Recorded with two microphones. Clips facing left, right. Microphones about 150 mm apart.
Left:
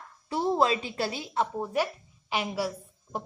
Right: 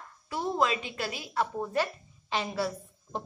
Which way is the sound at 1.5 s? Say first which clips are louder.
Left 1 dB; 10° left (ahead or behind).